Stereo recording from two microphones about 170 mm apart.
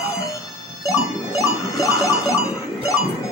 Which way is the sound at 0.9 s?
20° left (ahead or behind).